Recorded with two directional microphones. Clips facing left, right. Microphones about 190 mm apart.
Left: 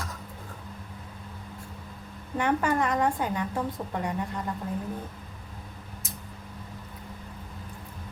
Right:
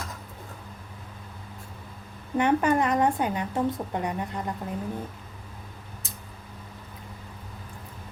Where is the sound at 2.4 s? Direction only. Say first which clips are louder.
Right 3 dB; 20° right (ahead or behind).